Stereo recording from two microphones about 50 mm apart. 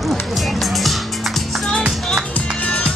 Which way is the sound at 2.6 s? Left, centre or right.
Left.